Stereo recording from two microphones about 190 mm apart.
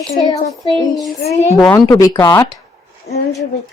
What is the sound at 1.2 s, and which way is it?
Speech, 35° left (ahead or behind).